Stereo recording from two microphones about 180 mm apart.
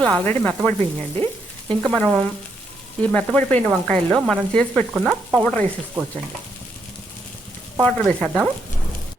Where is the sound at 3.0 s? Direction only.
10° left (ahead or behind).